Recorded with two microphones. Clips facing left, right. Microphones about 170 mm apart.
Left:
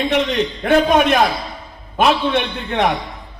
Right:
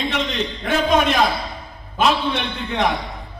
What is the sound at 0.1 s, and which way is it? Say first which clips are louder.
A man's voice: left 6 dB; 55° left (ahead or behind).